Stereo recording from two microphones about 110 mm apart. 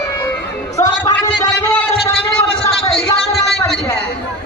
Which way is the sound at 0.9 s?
35° left (ahead or behind).